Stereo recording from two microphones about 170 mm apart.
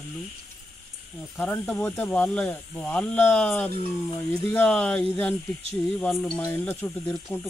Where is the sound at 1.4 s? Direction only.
10° left (ahead or behind).